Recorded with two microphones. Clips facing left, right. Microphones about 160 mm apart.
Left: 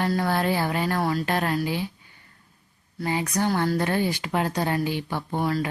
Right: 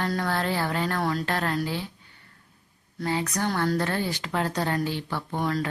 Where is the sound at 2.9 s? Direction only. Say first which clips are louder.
Left 2 dB; 10° left (ahead or behind).